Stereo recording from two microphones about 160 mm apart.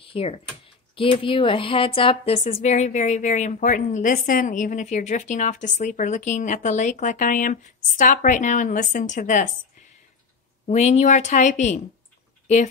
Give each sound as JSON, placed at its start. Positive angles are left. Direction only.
{"t": 0.0, "sound": "a woman's voice", "side_deg": 35}
{"t": 10.7, "sound": "a woman's voice", "side_deg": 45}